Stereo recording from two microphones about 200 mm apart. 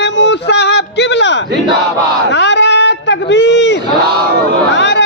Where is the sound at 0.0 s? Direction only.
60° left (ahead or behind).